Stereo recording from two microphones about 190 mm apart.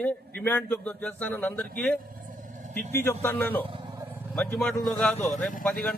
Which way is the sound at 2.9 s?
10° left (ahead or behind).